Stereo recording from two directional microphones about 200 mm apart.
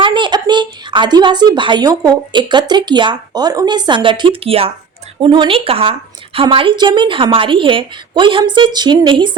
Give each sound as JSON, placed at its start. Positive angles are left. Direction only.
{"t": 0.0, "sound": "a woman's voice", "side_deg": -25}